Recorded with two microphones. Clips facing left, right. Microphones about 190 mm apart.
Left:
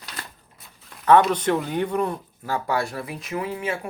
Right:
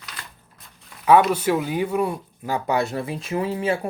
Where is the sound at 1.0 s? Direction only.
10° right (ahead or behind).